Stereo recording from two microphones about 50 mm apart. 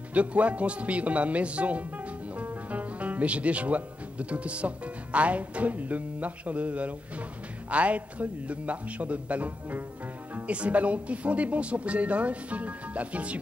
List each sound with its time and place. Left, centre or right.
0.1 s speech: right